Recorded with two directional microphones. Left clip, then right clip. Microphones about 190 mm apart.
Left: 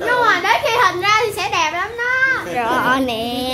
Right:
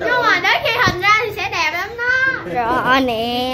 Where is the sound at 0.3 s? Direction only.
55° left (ahead or behind).